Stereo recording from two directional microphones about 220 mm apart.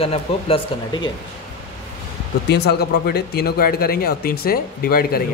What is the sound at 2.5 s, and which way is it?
Speech, 45° left (ahead or behind).